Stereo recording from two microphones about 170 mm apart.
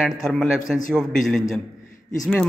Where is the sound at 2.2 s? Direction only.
5° left (ahead or behind).